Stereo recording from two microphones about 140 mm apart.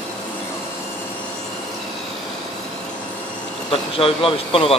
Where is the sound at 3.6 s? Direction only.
40° left (ahead or behind).